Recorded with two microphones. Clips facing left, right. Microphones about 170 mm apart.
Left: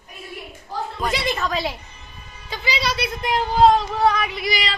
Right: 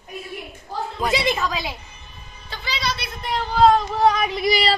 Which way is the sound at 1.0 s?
5° right (ahead or behind).